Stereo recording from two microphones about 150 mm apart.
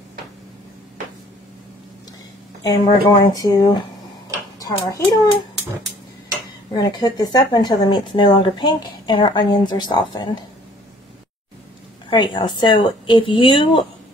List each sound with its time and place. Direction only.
2.6 s a child's voice: 25° left (ahead or behind)
6.7 s speech: 30° left (ahead or behind)
12.1 s speech: 30° left (ahead or behind)